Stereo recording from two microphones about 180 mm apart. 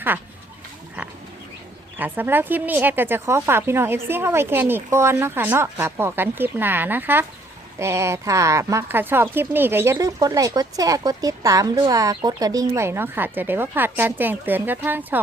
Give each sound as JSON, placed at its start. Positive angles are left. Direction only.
{"t": 1.0, "sound": "frog", "side_deg": -10}
{"t": 2.0, "sound": "speech", "side_deg": -10}